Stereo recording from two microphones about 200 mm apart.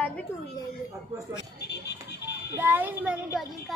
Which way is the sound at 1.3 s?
60° left (ahead or behind).